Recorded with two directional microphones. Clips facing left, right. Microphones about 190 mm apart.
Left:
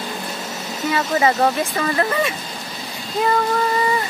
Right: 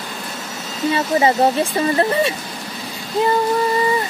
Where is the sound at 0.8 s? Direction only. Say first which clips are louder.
Right 2 dB; 25° right (ahead or behind).